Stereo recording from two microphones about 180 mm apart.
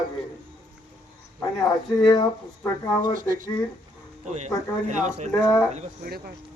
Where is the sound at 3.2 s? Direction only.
50° right (ahead or behind).